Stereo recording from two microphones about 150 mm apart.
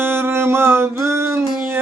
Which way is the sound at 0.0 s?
15° right (ahead or behind).